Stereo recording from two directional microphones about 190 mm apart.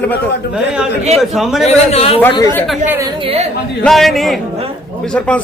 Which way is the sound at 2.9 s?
20° right (ahead or behind).